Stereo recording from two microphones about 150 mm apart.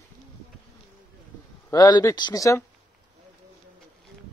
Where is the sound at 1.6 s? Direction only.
25° left (ahead or behind).